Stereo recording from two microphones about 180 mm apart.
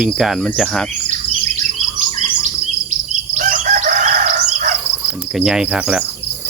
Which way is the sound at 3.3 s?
45° right (ahead or behind).